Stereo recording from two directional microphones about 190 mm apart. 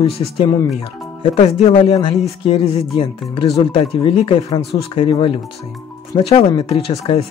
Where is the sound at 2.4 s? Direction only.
30° left (ahead or behind).